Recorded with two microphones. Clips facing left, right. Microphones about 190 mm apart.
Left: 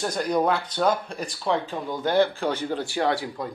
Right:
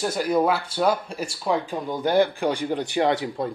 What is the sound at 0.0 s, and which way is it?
Speech, 5° right (ahead or behind).